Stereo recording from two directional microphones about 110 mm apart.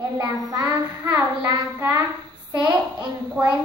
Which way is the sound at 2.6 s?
40° right (ahead or behind).